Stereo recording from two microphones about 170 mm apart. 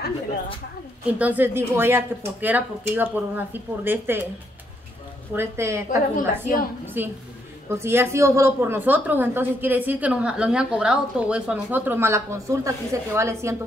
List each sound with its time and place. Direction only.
1.1 s a woman's voice: 10° right (ahead or behind)
5.3 s a woman's voice: 15° right (ahead or behind)
6.1 s a woman's voice: 55° left (ahead or behind)
7.0 s a woman's voice: 10° right (ahead or behind)